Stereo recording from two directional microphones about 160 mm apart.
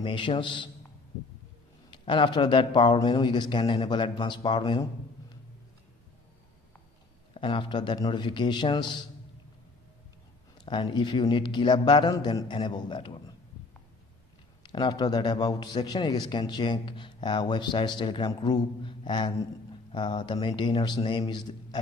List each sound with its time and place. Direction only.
0.0 s a man's voice: 30° left (ahead or behind)
1.9 s a man's voice: 30° left (ahead or behind)
7.3 s a man's voice: 30° left (ahead or behind)
10.6 s a man's voice: 30° left (ahead or behind)
14.6 s a man's voice: 25° left (ahead or behind)